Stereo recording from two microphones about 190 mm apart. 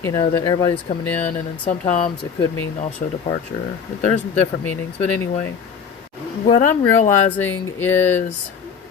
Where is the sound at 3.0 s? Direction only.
40° left (ahead or behind).